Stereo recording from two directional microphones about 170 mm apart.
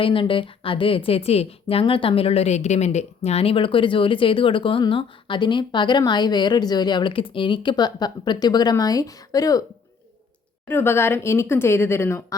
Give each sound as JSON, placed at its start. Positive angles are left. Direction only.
{"t": 0.0, "sound": "a woman's voice", "side_deg": 30}
{"t": 10.7, "sound": "speech", "side_deg": 15}